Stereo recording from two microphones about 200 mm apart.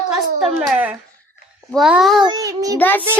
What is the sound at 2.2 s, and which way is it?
Speech, 20° right (ahead or behind).